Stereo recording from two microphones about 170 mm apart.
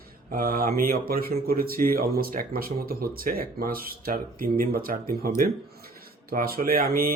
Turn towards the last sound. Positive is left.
turn(degrees=-60)  # may be behind; listen again after turning